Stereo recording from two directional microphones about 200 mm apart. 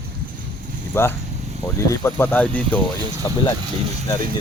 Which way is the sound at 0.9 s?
10° left (ahead or behind).